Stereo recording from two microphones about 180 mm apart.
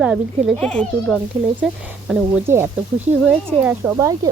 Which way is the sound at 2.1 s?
10° right (ahead or behind).